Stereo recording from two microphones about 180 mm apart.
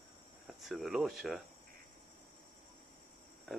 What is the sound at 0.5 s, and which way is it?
Speech, centre (ahead or behind).